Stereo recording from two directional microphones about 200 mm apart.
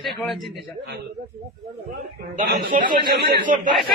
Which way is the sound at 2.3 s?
50° right (ahead or behind).